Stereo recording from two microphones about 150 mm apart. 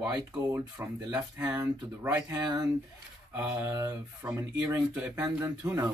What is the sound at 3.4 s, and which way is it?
Speech, 15° right (ahead or behind).